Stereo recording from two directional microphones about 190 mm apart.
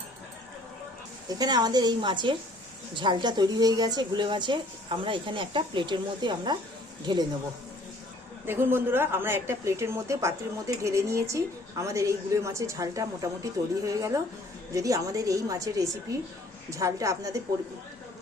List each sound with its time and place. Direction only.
1.4 s speech: 20° right (ahead or behind)
8.4 s a woman's voice: 10° right (ahead or behind)